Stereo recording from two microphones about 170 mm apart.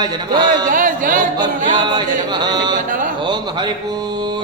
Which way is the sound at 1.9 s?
25° right (ahead or behind).